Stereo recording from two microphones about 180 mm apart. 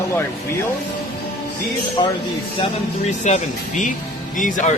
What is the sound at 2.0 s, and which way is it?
Speech, 25° left (ahead or behind).